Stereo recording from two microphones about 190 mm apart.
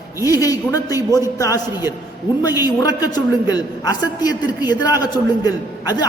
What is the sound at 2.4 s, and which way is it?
A man's voice, 20° left (ahead or behind).